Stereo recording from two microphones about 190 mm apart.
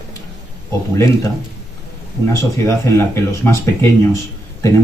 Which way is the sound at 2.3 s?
15° left (ahead or behind).